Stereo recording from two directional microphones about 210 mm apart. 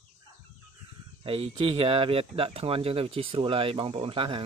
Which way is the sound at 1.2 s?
25° right (ahead or behind).